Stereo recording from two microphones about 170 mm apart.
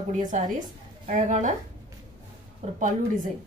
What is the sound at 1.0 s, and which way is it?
Speech, 50° right (ahead or behind).